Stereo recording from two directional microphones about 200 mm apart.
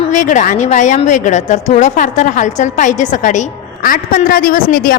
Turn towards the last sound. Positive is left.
turn(degrees=45)  # may be behind; listen again after turning